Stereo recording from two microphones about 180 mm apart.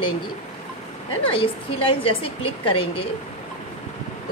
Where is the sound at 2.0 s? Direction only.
30° left (ahead or behind).